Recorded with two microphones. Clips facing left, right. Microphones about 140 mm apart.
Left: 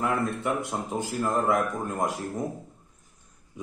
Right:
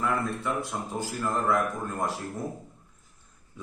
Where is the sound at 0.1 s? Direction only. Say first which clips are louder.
Left 2 dB; 20° left (ahead or behind).